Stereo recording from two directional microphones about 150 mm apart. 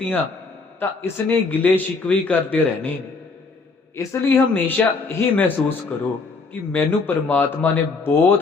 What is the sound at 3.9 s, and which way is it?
Speech, 15° left (ahead or behind).